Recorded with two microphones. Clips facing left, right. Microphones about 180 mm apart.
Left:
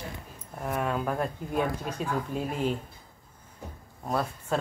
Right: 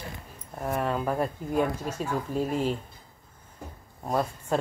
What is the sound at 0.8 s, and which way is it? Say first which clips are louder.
Speech: right 1 dB; centre (ahead or behind).